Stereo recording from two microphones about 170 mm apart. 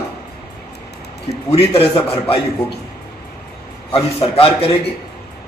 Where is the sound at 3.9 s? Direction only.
35° left (ahead or behind).